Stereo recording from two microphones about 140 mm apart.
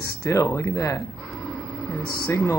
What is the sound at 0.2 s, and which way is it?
Speech, 20° left (ahead or behind).